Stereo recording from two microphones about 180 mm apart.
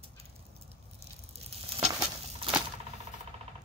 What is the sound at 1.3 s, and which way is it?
Sizzle, 35° right (ahead or behind).